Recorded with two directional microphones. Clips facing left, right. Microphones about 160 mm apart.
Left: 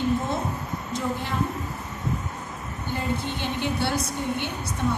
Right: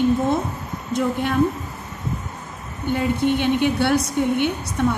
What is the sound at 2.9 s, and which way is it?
A woman's voice, 65° right (ahead or behind).